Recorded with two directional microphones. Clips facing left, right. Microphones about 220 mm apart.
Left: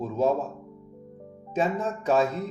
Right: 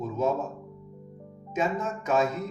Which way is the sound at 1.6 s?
30° left (ahead or behind).